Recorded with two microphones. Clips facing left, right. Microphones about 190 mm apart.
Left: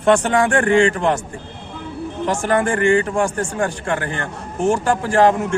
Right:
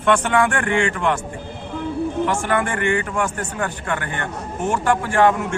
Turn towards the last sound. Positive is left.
turn(degrees=35)  # may be behind; listen again after turning